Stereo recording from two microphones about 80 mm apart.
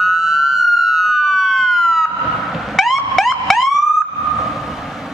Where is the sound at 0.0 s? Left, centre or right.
Centre.